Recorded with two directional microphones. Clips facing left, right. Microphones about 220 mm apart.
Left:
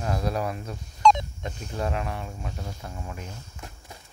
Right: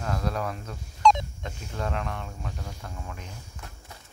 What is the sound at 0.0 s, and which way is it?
Speech, 10° left (ahead or behind).